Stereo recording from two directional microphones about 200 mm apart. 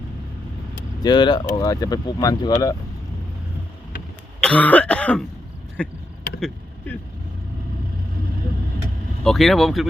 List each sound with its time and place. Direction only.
1.0 s speech: 20° left (ahead or behind)
4.4 s cough: 5° left (ahead or behind)
5.8 s speech: 5° left (ahead or behind)
9.2 s speech: centre (ahead or behind)